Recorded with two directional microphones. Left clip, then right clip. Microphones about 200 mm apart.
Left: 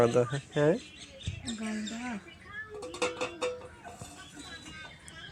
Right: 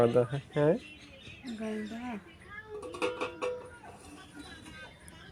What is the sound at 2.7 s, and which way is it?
Music, 50° left (ahead or behind).